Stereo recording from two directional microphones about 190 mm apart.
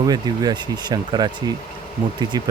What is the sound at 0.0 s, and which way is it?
Speech, 20° right (ahead or behind).